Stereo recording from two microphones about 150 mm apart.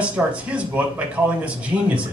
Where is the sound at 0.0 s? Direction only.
10° right (ahead or behind).